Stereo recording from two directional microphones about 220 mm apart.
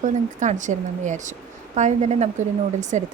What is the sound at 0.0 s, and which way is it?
Speech, 35° right (ahead or behind).